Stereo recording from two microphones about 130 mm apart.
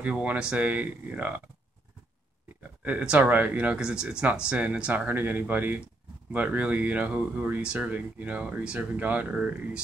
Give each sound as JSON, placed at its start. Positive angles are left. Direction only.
{"t": 0.0, "sound": "speech", "side_deg": -10}
{"t": 2.8, "sound": "speech", "side_deg": -10}